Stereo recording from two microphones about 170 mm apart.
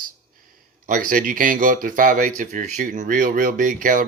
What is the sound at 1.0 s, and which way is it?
Speech, 55° right (ahead or behind).